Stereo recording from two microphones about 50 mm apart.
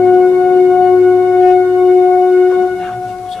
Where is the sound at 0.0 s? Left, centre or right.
Centre.